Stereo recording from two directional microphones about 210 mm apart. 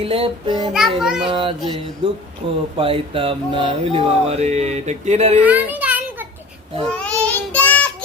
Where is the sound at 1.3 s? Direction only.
25° right (ahead or behind).